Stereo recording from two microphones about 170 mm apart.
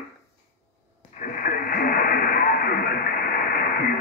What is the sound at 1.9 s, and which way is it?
Radio, 60° left (ahead or behind).